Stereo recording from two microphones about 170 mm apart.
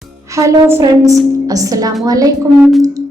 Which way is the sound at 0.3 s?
20° right (ahead or behind).